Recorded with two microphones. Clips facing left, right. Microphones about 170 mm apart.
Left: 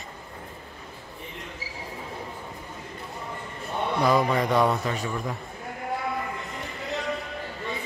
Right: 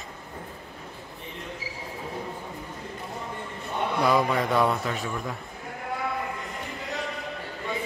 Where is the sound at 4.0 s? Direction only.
Centre (ahead or behind).